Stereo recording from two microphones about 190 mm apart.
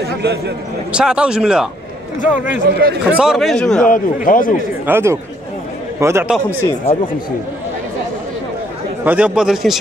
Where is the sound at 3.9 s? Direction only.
45° left (ahead or behind).